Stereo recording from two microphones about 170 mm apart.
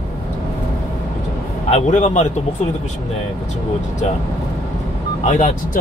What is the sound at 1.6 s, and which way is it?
Speech, 40° left (ahead or behind).